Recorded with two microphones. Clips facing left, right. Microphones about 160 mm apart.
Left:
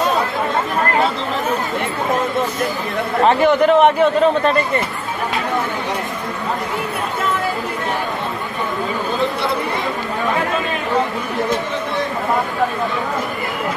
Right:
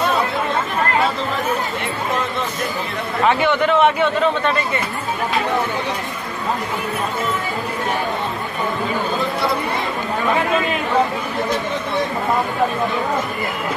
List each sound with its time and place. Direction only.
3.3 s a man's voice: 40° left (ahead or behind)